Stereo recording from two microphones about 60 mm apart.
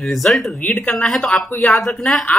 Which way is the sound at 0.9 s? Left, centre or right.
Centre.